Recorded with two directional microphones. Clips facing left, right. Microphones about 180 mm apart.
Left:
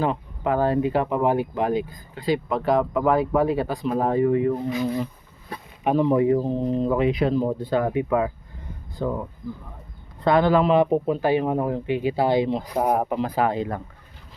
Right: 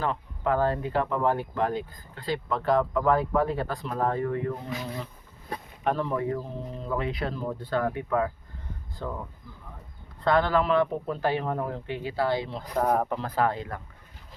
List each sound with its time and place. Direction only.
0.0 s speech: 15° left (ahead or behind)
10.2 s speech: 15° left (ahead or behind)